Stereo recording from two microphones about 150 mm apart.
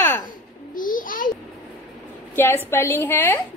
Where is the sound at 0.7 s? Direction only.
65° left (ahead or behind).